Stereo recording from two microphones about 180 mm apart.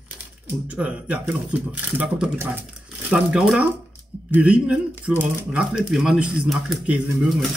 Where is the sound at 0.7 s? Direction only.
5° right (ahead or behind).